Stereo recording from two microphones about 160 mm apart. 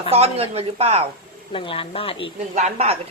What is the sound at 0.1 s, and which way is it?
Speech, 40° right (ahead or behind).